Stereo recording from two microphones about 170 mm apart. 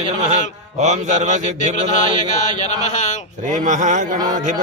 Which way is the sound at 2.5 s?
45° left (ahead or behind).